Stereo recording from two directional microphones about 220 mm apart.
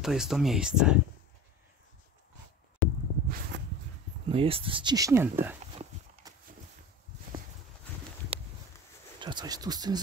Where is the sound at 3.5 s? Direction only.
55° right (ahead or behind).